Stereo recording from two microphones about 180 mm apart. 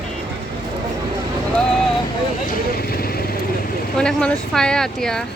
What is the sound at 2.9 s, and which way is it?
Vehicle, 55° left (ahead or behind).